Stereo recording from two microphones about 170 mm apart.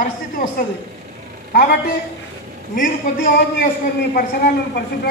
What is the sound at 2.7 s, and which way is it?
Speech, 50° left (ahead or behind).